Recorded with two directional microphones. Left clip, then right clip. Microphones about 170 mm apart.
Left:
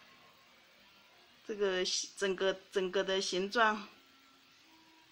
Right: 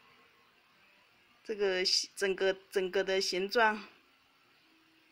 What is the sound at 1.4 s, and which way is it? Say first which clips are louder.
Speech: right 2 dB; 15° right (ahead or behind).